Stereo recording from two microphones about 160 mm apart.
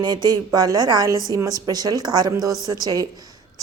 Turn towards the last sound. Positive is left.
turn(degrees=-25)  # may be behind; listen again after turning